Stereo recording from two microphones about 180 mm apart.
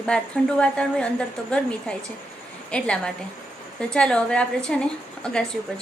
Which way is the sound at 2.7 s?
5° left (ahead or behind).